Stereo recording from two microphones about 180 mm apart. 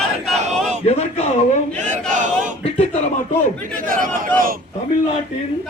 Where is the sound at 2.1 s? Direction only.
45° right (ahead or behind).